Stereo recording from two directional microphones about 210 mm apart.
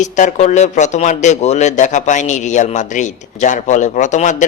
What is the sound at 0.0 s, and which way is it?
Speech, 35° left (ahead or behind).